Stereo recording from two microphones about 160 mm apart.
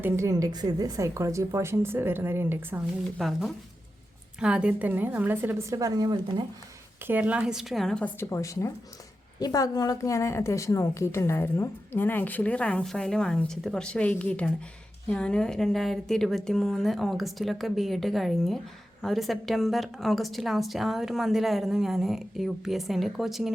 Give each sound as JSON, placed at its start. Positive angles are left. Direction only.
{"t": 0.0, "sound": "a woman's voice", "side_deg": -20}
{"t": 3.2, "sound": "a woman's voice", "side_deg": 0}
{"t": 7.0, "sound": "a woman's voice", "side_deg": -10}
{"t": 8.2, "sound": "a woman's voice", "side_deg": 20}